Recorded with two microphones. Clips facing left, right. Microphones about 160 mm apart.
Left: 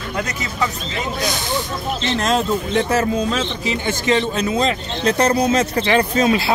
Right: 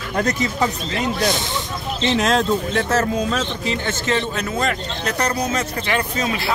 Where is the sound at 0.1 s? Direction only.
40° right (ahead or behind).